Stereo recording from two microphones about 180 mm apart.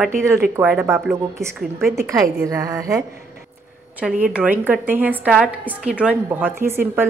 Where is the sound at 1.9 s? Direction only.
15° right (ahead or behind).